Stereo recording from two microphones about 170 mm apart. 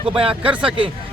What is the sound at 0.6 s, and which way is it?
Speech, 30° right (ahead or behind).